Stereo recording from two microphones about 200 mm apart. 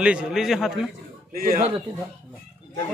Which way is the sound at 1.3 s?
45° right (ahead or behind).